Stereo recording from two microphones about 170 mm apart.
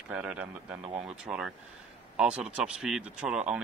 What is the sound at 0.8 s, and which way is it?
Speech, 35° right (ahead or behind).